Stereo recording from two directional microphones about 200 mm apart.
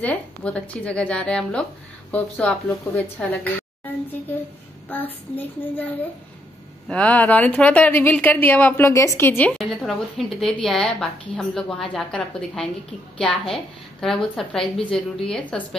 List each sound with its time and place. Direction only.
0.0 s a woman's voice: 5° left (ahead or behind)
9.6 s a woman's voice: centre (ahead or behind)